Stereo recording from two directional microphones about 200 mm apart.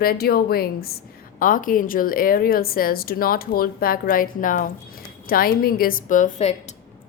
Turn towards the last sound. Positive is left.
turn(degrees=35)  # may be behind; listen again after turning